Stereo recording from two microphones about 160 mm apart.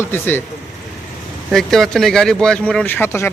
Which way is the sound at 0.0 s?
15° left (ahead or behind).